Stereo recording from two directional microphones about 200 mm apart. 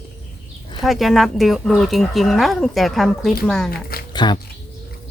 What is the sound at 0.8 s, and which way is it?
Speech, centre (ahead or behind).